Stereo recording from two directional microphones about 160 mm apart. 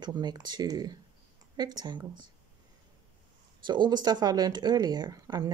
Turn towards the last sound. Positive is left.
turn(degrees=-25)  # may be behind; listen again after turning